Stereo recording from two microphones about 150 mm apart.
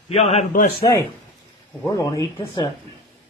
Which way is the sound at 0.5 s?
70° left (ahead or behind).